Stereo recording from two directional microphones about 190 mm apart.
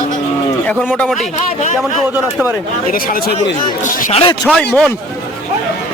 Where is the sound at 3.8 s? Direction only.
40° left (ahead or behind).